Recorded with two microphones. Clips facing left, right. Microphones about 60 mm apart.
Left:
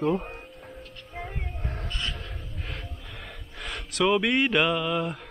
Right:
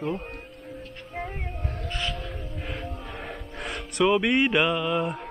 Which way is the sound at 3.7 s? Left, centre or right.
Centre.